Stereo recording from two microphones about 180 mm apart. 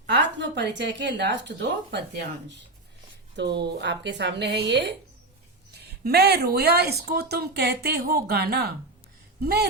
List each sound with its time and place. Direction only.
0.1 s speech: 80° right
5.7 s speech: 60° right (ahead or behind)